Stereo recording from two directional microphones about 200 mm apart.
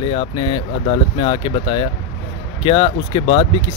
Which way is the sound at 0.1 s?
25° left (ahead or behind).